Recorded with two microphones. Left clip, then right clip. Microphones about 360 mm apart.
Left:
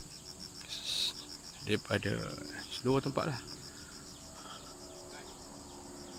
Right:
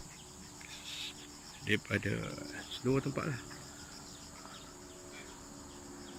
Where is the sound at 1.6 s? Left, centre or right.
Centre.